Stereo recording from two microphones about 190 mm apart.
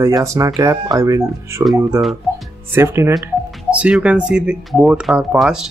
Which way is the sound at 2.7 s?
15° right (ahead or behind).